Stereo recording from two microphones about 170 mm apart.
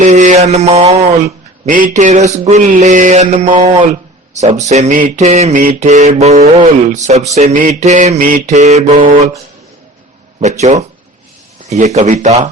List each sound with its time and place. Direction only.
0.0 s speech: 45° right (ahead or behind)
5.6 s mantra: 45° right (ahead or behind)
7.3 s speech: 50° right (ahead or behind)
8.4 s mantra: 40° right (ahead or behind)
10.4 s speech: 45° right (ahead or behind)